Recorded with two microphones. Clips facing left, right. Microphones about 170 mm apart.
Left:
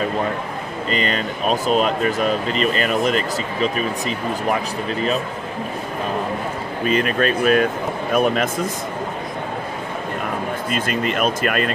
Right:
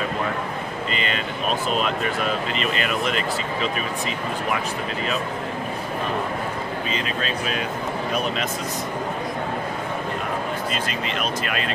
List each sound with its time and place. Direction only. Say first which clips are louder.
0.8 s speech: left 7 dB; 40° left (ahead or behind)
6.9 s speech: left 13 dB; 55° left (ahead or behind)
10.7 s speech: left 5 dB; 50° left (ahead or behind)